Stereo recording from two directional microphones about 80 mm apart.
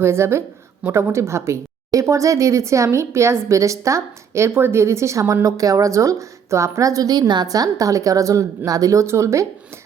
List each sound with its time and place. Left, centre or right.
0.0 s a woman's voice: right